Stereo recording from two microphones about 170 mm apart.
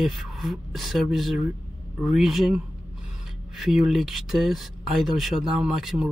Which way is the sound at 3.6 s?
Centre (ahead or behind).